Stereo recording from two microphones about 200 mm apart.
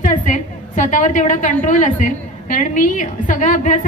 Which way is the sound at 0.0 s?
40° left (ahead or behind).